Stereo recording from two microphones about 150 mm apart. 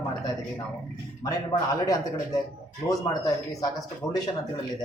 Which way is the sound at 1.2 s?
25° left (ahead or behind).